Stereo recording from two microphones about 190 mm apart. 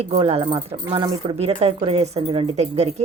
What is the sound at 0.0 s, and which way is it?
A woman's voice, 30° right (ahead or behind).